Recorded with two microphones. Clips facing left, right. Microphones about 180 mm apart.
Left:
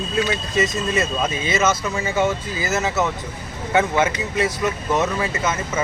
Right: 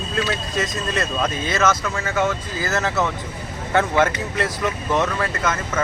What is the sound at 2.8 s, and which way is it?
Speech, 5° left (ahead or behind).